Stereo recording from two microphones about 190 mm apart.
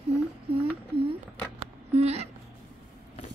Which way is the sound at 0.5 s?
30° right (ahead or behind).